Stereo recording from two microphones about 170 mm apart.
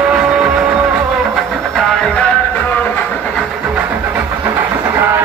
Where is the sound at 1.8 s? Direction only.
5° left (ahead or behind).